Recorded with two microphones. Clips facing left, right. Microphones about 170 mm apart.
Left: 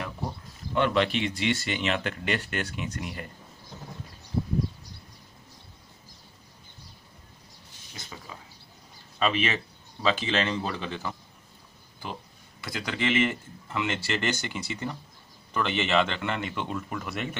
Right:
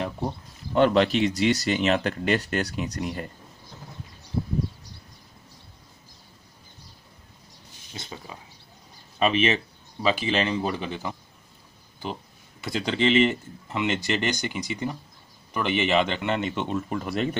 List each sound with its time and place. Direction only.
0.7 s speech: 40° right (ahead or behind)
7.9 s a sound: 25° right (ahead or behind)
9.2 s speech: 20° right (ahead or behind)